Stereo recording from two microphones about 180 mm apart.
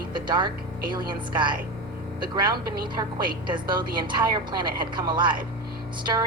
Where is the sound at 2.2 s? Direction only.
25° right (ahead or behind).